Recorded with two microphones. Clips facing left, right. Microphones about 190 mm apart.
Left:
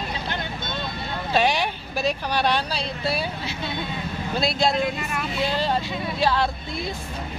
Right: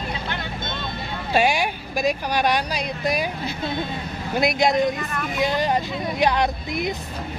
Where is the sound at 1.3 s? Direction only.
10° right (ahead or behind).